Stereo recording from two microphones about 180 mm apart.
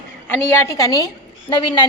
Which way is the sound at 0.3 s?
10° left (ahead or behind).